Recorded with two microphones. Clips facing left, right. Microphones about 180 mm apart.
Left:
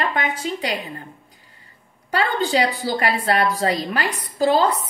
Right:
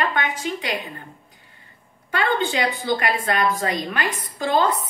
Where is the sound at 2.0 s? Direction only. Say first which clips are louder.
Left 1 dB; 35° left (ahead or behind).